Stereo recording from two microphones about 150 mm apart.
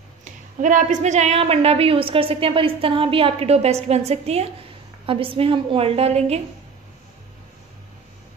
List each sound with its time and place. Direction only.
0.2 s a woman's voice: 60° right (ahead or behind)